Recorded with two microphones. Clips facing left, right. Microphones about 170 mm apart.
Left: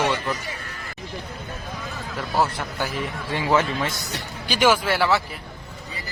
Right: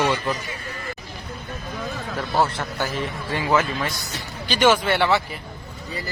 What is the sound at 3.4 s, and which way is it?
Speech, 20° left (ahead or behind).